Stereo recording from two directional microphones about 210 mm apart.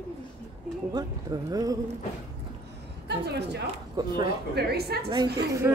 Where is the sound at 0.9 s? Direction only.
20° right (ahead or behind).